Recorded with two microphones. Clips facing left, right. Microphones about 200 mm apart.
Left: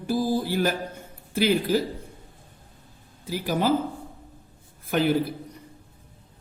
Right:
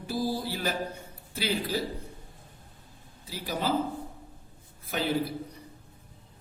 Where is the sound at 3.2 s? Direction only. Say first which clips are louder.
Left 8 dB; 50° left (ahead or behind).